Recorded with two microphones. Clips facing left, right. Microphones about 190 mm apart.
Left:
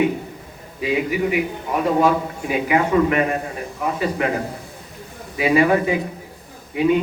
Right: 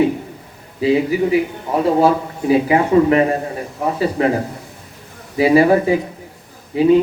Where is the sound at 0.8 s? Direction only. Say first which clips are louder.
Right 5 dB; 30° right (ahead or behind).